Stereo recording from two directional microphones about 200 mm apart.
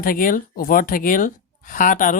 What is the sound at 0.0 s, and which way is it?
Speech, 45° left (ahead or behind).